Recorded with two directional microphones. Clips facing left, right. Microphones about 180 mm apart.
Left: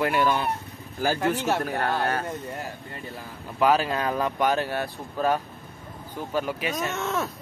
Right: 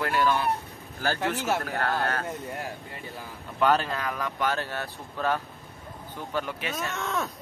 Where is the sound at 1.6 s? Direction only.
15° left (ahead or behind).